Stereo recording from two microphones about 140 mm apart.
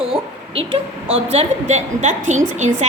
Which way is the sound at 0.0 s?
40° right (ahead or behind).